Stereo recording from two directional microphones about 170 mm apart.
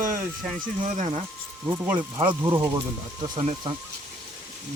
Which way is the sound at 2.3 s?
25° right (ahead or behind).